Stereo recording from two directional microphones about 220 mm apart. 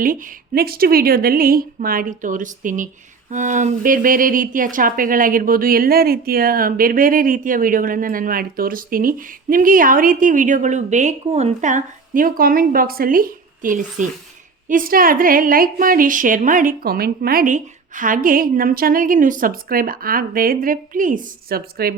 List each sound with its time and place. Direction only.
0.0 s a woman's voice: 40° right (ahead or behind)